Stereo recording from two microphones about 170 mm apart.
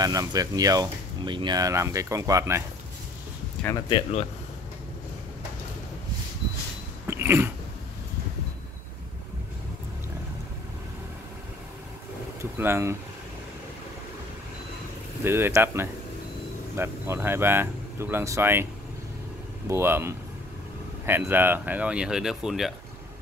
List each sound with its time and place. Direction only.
0.0 s speech: 20° right (ahead or behind)
3.9 s speech: 40° left (ahead or behind)
7.1 s a sound: 15° right (ahead or behind)
12.5 s speech: 15° right (ahead or behind)
15.2 s speech: 15° right (ahead or behind)
19.7 s speech: 15° right (ahead or behind)